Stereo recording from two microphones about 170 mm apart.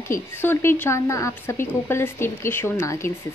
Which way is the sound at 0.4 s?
15° left (ahead or behind).